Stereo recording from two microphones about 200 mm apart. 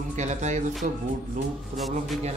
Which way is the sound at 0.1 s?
35° right (ahead or behind).